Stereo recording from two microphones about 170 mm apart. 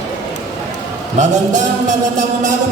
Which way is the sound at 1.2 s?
45° right (ahead or behind).